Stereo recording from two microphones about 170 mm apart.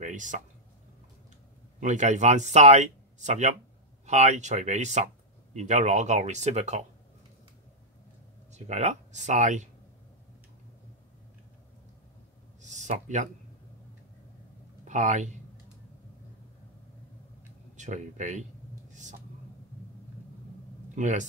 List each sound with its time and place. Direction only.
0.0 s speech: 50° right (ahead or behind)
1.8 s speech: 45° right (ahead or behind)
8.5 s speech: 40° right (ahead or behind)
12.6 s a sound: 45° right (ahead or behind)
14.9 s speech: 45° right (ahead or behind)
17.7 s speech: 45° right (ahead or behind)
20.9 s speech: 45° right (ahead or behind)